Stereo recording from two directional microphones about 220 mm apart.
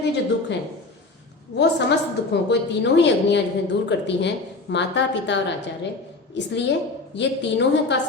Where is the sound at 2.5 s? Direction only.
50° left (ahead or behind).